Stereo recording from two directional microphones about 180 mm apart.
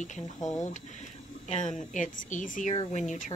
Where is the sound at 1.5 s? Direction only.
40° left (ahead or behind).